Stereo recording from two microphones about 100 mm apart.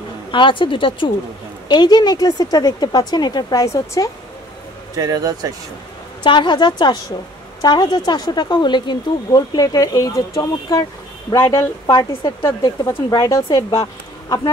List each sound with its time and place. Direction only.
0.3 s speech: 55° left (ahead or behind)
1.7 s speech: 45° left (ahead or behind)
4.9 s speech: 35° right (ahead or behind)
6.2 s speech: 50° left (ahead or behind); by 11.7 s 25° left (ahead or behind)
11.8 s speech: 40° left (ahead or behind)
12.1 s speech: 60° left (ahead or behind)
13.1 s speech: 40° left (ahead or behind)